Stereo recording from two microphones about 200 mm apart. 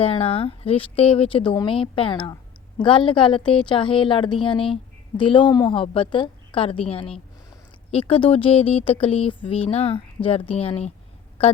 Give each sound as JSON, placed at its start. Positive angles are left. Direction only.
{"t": 0.0, "sound": "speech", "side_deg": 30}